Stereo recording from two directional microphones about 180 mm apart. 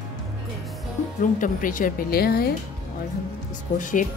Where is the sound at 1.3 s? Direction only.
50° left (ahead or behind).